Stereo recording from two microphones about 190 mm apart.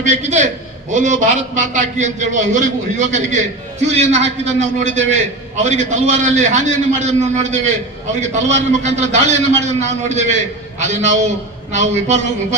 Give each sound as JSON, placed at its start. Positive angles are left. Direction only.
{"t": 0.0, "sound": "a man's voice", "side_deg": -40}